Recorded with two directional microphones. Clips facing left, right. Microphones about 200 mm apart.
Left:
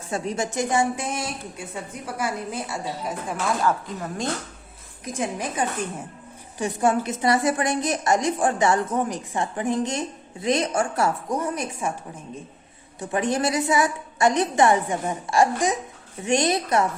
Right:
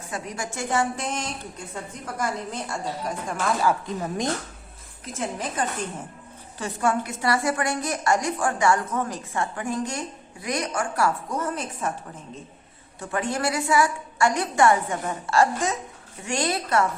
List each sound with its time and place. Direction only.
0.1 s a woman's voice: 25° left (ahead or behind); by 3.5 s 5° left (ahead or behind)
3.8 s speech: 20° right (ahead or behind)
5.0 s a woman's voice: 15° left (ahead or behind)
13.0 s a woman's voice: 20° left (ahead or behind)